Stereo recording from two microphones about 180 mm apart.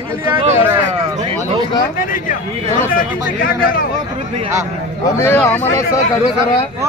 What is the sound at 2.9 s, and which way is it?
Speech, 50° left (ahead or behind).